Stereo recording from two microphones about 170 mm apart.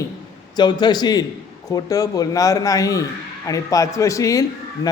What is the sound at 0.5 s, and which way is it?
A man's voice, 25° left (ahead or behind).